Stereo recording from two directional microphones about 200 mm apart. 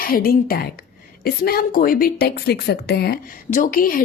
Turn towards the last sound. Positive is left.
turn(degrees=45)  # may be behind; listen again after turning